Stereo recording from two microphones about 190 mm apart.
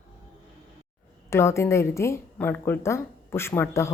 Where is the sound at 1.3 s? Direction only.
15° left (ahead or behind).